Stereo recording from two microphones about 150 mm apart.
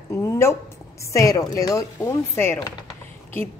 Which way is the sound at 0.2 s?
15° left (ahead or behind).